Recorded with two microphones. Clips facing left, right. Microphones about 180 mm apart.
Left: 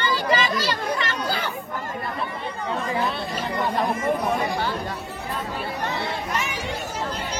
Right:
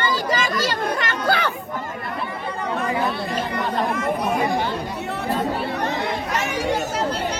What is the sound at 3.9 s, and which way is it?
Speech, 70° right (ahead or behind).